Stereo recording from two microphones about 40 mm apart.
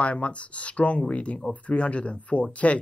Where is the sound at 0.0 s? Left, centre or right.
Left.